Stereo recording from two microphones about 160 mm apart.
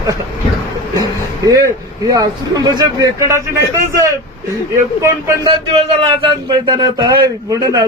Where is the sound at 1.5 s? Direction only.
25° right (ahead or behind).